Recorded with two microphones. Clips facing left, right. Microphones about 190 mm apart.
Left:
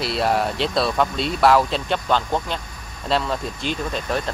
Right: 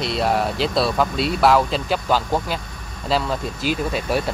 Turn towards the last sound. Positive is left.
turn(degrees=-10)  # may be behind; listen again after turning